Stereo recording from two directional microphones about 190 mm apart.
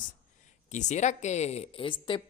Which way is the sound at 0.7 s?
40° left (ahead or behind).